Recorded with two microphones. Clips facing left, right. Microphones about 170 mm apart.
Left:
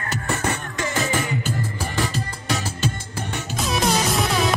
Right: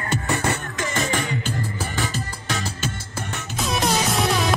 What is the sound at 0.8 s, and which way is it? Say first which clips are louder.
Music: left 1 dB; centre (ahead or behind).